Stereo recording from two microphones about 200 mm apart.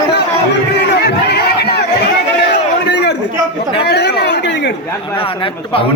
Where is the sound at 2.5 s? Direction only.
60° left (ahead or behind).